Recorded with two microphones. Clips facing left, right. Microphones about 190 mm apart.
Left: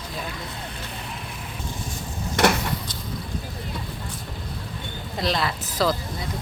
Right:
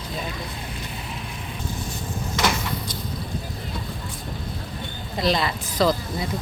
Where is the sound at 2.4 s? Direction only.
65° left (ahead or behind).